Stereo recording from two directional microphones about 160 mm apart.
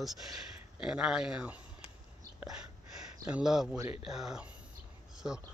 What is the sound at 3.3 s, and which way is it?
Speech, 5° right (ahead or behind).